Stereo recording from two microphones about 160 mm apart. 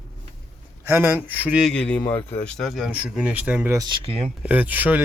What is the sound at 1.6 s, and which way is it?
Speech, 5° left (ahead or behind).